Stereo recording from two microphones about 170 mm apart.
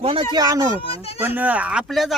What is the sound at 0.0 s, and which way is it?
Speech, 35° right (ahead or behind).